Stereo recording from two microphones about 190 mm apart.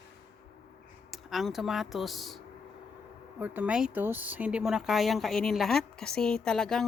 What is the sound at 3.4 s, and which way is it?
Speech, 10° right (ahead or behind).